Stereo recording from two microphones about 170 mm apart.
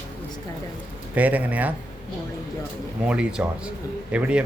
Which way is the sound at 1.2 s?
10° right (ahead or behind).